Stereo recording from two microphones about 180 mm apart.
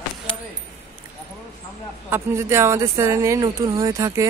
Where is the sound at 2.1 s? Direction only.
15° right (ahead or behind).